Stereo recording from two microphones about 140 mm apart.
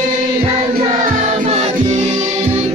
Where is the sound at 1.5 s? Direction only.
50° right (ahead or behind).